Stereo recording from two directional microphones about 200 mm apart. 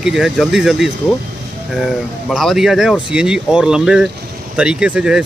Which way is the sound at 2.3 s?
Centre (ahead or behind).